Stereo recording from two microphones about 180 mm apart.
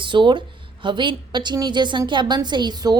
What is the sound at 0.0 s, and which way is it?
A woman's voice, 25° right (ahead or behind).